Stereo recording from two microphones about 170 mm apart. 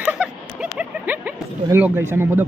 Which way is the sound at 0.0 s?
10° right (ahead or behind).